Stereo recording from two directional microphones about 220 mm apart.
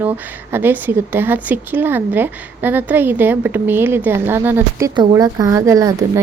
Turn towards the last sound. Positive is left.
turn(degrees=-15)  # may be behind; listen again after turning